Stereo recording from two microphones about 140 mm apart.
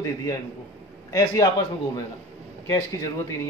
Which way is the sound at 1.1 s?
25° left (ahead or behind).